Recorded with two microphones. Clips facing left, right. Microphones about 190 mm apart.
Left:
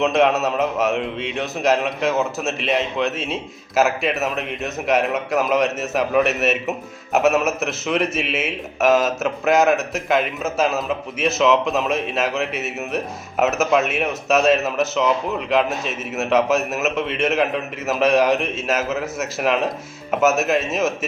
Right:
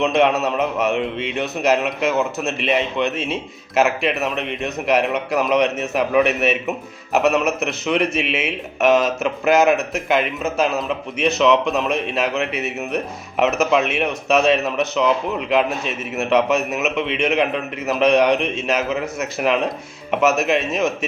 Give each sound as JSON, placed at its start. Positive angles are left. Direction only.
{"t": 0.0, "sound": "a man's voice", "side_deg": 0}